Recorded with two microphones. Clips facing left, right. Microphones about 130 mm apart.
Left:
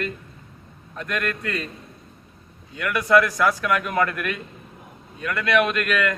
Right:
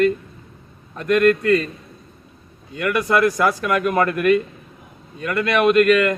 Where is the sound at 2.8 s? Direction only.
40° right (ahead or behind).